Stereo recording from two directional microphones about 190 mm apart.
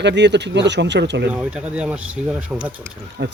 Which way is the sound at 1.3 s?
5° right (ahead or behind).